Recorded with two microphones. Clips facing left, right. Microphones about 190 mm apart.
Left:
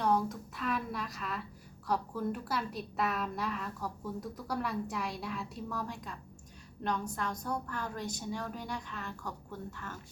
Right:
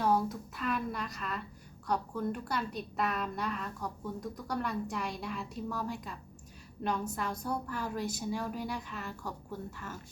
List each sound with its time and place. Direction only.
0.0 s a woman's voice: 5° right (ahead or behind)